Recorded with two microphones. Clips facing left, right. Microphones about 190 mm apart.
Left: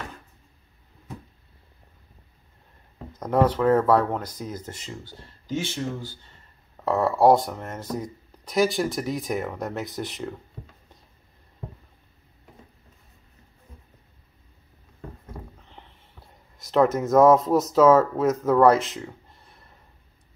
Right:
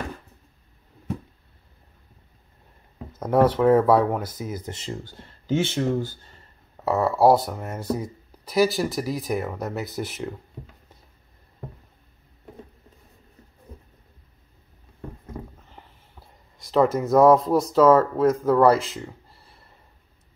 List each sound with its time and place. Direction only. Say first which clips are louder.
3.2 s speech: right 2 dB; 10° right (ahead or behind)
5.0 s speech: right 5 dB; 60° right (ahead or behind)
6.8 s speech: right 1 dB; centre (ahead or behind)
15.3 s a sound: right 4 dB; centre (ahead or behind)
16.5 s speech: even; centre (ahead or behind)